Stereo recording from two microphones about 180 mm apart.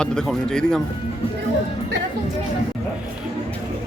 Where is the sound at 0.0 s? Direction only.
5° left (ahead or behind).